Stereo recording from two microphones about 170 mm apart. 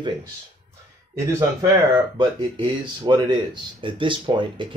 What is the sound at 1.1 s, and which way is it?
Speech, 15° right (ahead or behind).